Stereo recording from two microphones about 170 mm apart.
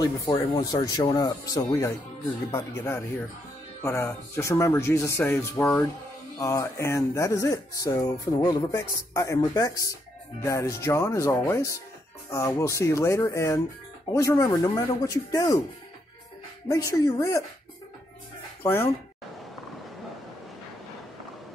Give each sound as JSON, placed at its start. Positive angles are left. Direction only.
{"t": 0.0, "sound": "speech", "side_deg": 20}
{"t": 16.6, "sound": "speech", "side_deg": 20}
{"t": 18.6, "sound": "speech", "side_deg": 15}